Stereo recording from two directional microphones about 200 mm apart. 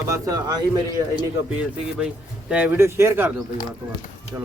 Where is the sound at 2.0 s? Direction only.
5° right (ahead or behind).